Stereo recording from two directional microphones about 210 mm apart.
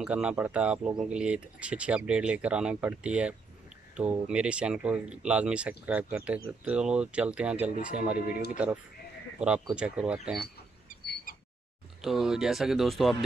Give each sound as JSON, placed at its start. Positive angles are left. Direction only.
{"t": 0.0, "sound": "speech", "side_deg": -5}
{"t": 8.2, "sound": "speech", "side_deg": 45}
{"t": 9.4, "sound": "speech", "side_deg": -5}
{"t": 12.0, "sound": "speech", "side_deg": 0}